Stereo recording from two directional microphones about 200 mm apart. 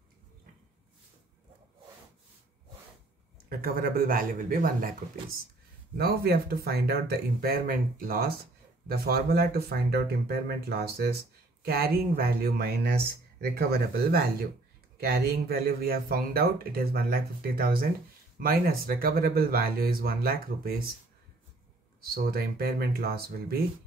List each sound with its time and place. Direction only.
3.4 s speech: 45° right (ahead or behind)
5.9 s speech: 50° right (ahead or behind)
22.1 s speech: 50° right (ahead or behind)